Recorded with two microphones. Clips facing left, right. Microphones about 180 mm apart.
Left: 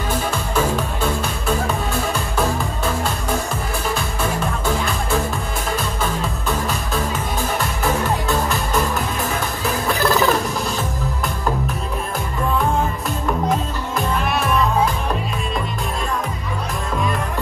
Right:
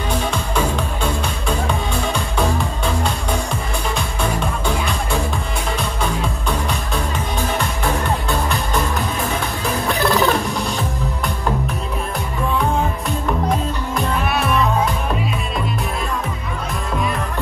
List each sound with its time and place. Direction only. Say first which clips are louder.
0.3 s music: even; 5° left (ahead or behind)
3.9 s music: right 2 dB; 5° left (ahead or behind)
7.5 s music: left 2 dB; centre (ahead or behind)
9.8 s music: even; centre (ahead or behind)